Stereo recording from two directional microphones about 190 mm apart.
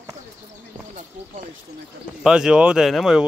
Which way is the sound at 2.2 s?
5° right (ahead or behind).